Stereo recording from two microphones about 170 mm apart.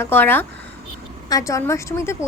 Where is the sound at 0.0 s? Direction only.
10° left (ahead or behind).